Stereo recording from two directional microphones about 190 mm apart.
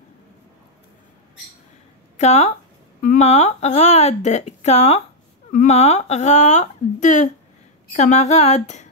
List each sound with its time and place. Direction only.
2.1 s speech: 35° left (ahead or behind)